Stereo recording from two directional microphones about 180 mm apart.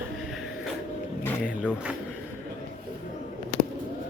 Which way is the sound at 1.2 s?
10° left (ahead or behind).